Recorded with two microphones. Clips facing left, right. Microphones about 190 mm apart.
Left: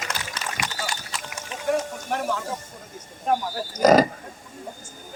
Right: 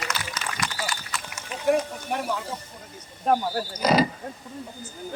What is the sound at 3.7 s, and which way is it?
Speech, 45° left (ahead or behind).